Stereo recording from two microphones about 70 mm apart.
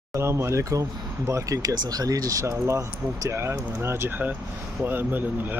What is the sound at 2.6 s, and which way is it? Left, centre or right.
Speech, right.